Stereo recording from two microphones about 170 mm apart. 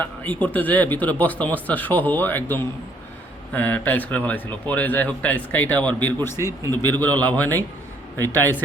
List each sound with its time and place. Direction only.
0.0 s a man's voice: 10° left (ahead or behind)